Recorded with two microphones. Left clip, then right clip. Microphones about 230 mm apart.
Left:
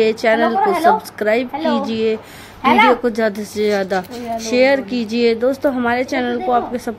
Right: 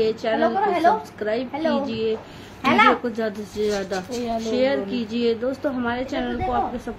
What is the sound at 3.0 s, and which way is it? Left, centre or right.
A woman's voice, left.